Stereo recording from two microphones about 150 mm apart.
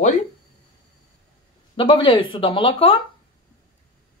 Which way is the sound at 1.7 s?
35° left (ahead or behind).